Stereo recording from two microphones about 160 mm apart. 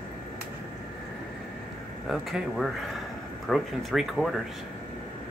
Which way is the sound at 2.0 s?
Centre (ahead or behind).